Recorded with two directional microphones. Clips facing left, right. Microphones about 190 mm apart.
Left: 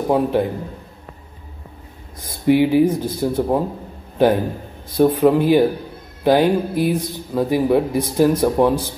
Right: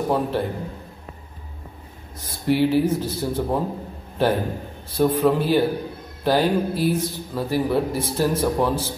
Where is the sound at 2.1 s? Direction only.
15° left (ahead or behind).